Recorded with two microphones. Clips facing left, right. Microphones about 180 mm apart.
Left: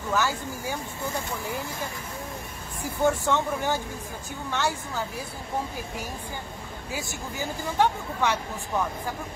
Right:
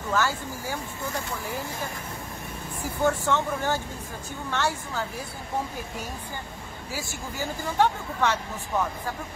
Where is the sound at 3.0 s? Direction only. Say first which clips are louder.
Left 1 dB; 15° left (ahead or behind).